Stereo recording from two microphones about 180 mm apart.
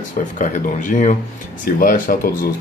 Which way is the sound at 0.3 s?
45° left (ahead or behind).